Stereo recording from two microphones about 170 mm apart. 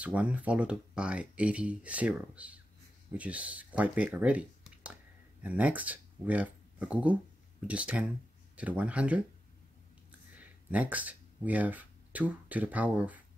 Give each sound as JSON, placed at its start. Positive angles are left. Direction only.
{"t": 0.0, "sound": "speech", "side_deg": -10}
{"t": 10.3, "sound": "speech", "side_deg": -10}